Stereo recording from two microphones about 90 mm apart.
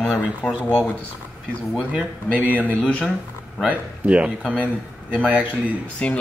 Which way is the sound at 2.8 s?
10° left (ahead or behind).